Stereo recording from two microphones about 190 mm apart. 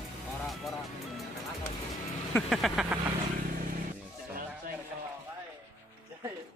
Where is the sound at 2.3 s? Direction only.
Centre (ahead or behind).